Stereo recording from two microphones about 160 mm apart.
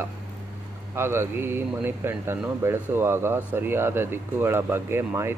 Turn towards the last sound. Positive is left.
turn(degrees=-15)  # may be behind; listen again after turning